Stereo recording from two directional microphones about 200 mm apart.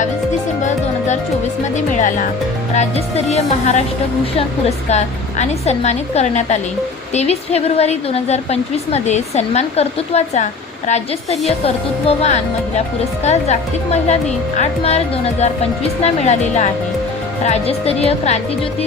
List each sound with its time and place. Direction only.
0.6 s music: 35° left (ahead or behind)
1.7 s a woman's voice: 40° left (ahead or behind)
4.9 s a woman's voice: 35° left (ahead or behind)